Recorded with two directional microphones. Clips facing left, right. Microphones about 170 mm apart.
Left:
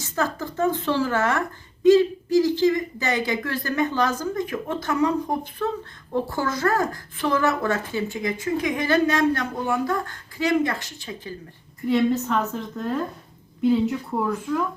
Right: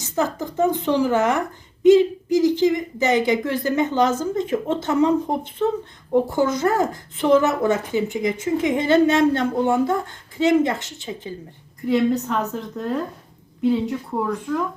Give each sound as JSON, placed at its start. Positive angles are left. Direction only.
{"t": 0.0, "sound": "a woman's voice", "side_deg": -20}
{"t": 11.9, "sound": "a woman's voice", "side_deg": 0}